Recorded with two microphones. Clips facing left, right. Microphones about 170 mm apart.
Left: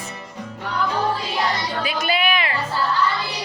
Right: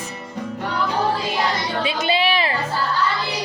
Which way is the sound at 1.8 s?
30° right (ahead or behind).